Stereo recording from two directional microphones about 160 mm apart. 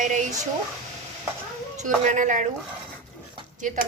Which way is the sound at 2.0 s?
50° right (ahead or behind).